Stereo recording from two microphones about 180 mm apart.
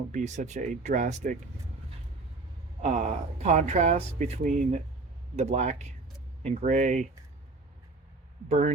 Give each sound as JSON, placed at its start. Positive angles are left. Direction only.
{"t": 0.1, "sound": "speech", "side_deg": -40}
{"t": 2.8, "sound": "speech", "side_deg": -40}
{"t": 8.4, "sound": "speech", "side_deg": -40}